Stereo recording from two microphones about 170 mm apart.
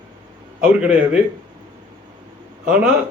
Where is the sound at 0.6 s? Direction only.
5° right (ahead or behind).